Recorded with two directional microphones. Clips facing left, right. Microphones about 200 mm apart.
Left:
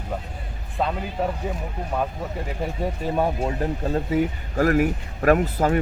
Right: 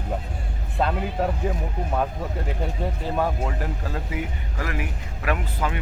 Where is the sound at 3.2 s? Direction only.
20° left (ahead or behind).